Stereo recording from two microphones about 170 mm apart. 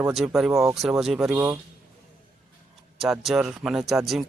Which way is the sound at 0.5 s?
15° right (ahead or behind).